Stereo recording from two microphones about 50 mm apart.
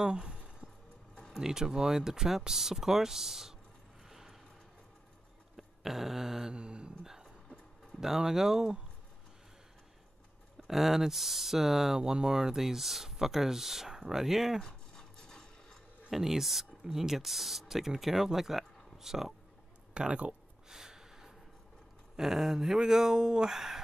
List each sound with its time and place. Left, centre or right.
0.0 s a sound: centre
1.3 s speech: centre
4.1 s a sound: centre
5.6 s a sound: centre
6.5 s mantra: centre
8.0 s speech: centre
10.7 s speech: centre
14.6 s a sound: centre
16.1 s speech: centre
19.9 s speech: right
20.6 s gasp: centre
22.1 s speech: centre